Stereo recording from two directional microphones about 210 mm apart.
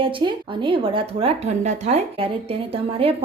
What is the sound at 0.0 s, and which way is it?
Speech, 25° right (ahead or behind).